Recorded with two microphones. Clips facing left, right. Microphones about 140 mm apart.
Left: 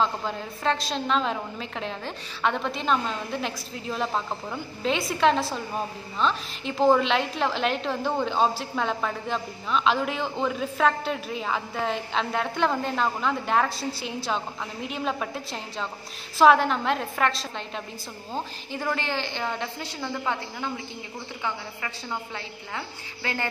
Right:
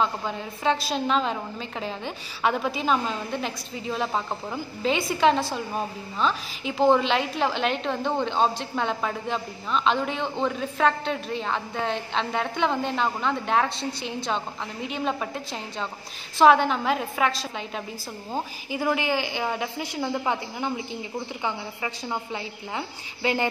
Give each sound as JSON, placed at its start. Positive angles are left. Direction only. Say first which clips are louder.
{"t": 0.0, "sound": "a woman's voice", "louder": "even", "side_deg": -5}